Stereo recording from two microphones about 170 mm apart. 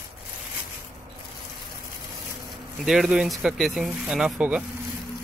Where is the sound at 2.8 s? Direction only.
Centre (ahead or behind).